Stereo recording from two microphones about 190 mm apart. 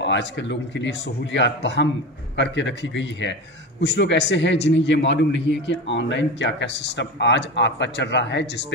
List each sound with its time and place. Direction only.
0.0 s a man's voice: 70° left (ahead or behind)